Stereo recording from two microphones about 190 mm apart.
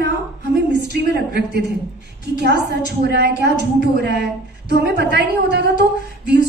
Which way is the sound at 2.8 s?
60° right (ahead or behind).